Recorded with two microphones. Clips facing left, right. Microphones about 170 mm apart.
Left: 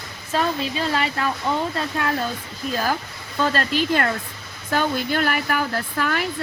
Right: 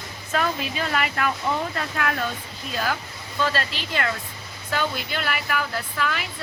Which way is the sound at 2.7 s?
40° left (ahead or behind).